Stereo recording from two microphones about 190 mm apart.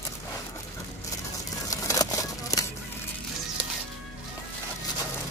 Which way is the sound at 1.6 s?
20° left (ahead or behind).